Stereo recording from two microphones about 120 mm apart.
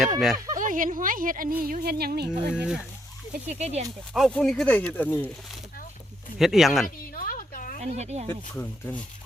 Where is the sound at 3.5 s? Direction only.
70° right (ahead or behind).